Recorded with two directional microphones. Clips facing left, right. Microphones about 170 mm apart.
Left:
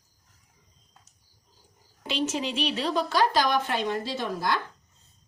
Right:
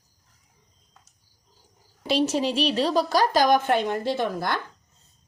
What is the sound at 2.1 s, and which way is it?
A woman's voice, 35° right (ahead or behind).